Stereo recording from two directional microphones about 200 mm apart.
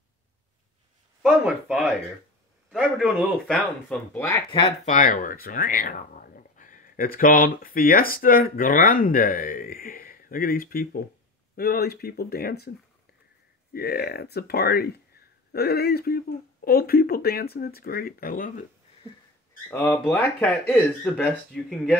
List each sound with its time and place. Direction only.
1.2 s speech: 5° right (ahead or behind)
4.5 s speech: 30° left (ahead or behind); by 12.7 s 50° left (ahead or behind)
13.7 s speech: 50° left (ahead or behind)
19.7 s speech: 10° left (ahead or behind)